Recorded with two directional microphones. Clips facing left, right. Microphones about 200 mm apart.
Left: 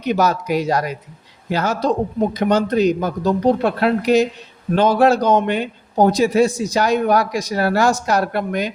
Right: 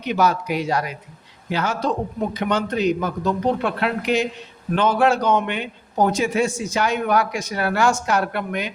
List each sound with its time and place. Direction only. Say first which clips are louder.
0.0 s a man's voice: left 2 dB; 40° left (ahead or behind)